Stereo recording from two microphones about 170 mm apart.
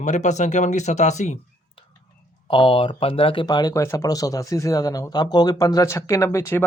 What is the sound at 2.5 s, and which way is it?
Speech, 30° left (ahead or behind).